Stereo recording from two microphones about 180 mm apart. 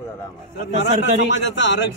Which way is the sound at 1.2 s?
90° left.